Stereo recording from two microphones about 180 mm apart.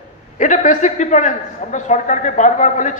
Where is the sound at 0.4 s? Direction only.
45° left (ahead or behind).